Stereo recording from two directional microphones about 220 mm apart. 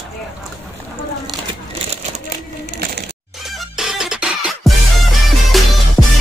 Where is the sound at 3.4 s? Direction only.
Centre (ahead or behind).